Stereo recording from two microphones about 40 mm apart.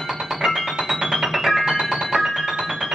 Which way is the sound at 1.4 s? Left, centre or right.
Centre.